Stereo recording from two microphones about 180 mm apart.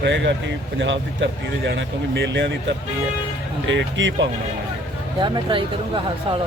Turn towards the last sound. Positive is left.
turn(degrees=-25)  # may be behind; listen again after turning